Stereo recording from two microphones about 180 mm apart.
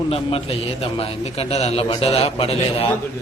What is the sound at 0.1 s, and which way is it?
A man's voice, 30° left (ahead or behind).